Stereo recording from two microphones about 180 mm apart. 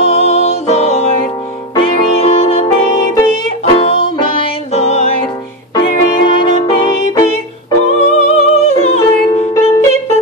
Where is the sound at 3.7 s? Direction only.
30° left (ahead or behind).